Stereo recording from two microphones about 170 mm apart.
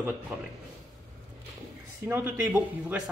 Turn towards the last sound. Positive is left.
turn(degrees=-10)  # may be behind; listen again after turning